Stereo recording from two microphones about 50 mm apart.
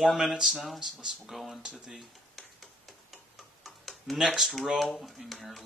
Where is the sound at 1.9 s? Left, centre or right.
Centre.